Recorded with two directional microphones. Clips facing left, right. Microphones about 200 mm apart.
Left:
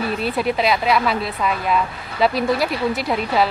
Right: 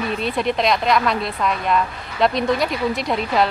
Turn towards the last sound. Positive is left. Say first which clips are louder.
# even
turn(degrees=5)  # may be behind; listen again after turning